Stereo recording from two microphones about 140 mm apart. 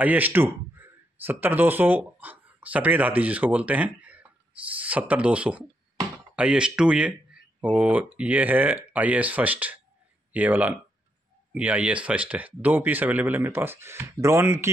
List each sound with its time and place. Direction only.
0.0 s speech: 10° right (ahead or behind)